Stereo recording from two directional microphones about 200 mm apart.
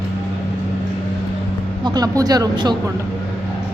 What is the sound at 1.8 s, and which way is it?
Speech, 20° right (ahead or behind).